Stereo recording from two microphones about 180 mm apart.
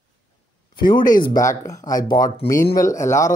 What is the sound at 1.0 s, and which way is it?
Speech, 50° left (ahead or behind).